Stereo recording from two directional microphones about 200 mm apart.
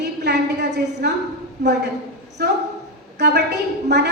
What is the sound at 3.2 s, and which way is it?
Speech, 55° right (ahead or behind).